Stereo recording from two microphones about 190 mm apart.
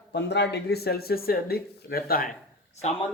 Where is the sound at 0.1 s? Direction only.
65° left (ahead or behind).